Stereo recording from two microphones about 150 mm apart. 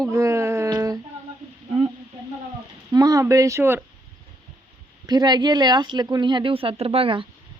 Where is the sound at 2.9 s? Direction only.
25° right (ahead or behind).